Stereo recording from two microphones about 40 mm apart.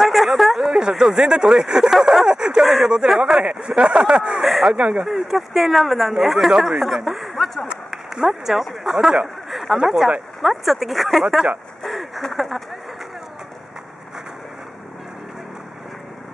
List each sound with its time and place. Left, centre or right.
0.0 s a sound: centre
0.6 s a sound: centre
1.0 s speech: centre
2.2 s speech: centre
2.5 s speech: centre
3.4 s speech: right
4.4 s speech: centre
4.7 s speech: right
5.0 s speech: centre
11.8 s a sound: centre
12.4 s speech: centre